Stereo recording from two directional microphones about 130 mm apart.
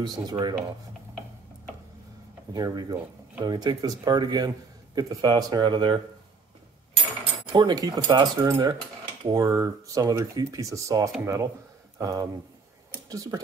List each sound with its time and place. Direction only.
0.0 s speech: 30° right (ahead or behind)
2.5 s speech: 30° right (ahead or behind)
7.5 s speech: 30° right (ahead or behind)